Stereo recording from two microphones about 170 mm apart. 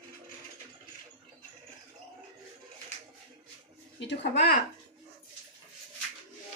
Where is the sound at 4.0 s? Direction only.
90° left.